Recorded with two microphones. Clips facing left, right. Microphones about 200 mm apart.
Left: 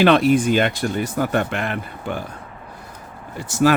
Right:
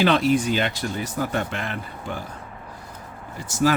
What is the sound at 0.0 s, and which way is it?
Speech, 60° left (ahead or behind).